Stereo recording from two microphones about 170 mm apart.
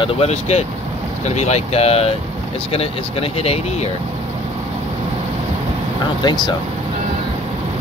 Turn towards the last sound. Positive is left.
turn(degrees=25)  # may be behind; listen again after turning